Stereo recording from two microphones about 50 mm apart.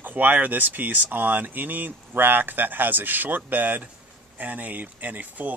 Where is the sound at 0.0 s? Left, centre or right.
Right.